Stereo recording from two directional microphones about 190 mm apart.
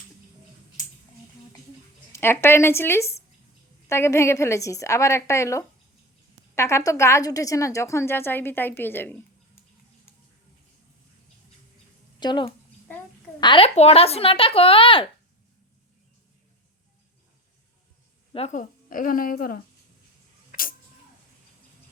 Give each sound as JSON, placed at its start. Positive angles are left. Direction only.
{"t": 2.1, "sound": "a woman's voice", "side_deg": 15}
{"t": 12.2, "sound": "speech", "side_deg": 25}
{"t": 18.3, "sound": "speech", "side_deg": 40}
{"t": 20.5, "sound": "a sound", "side_deg": 50}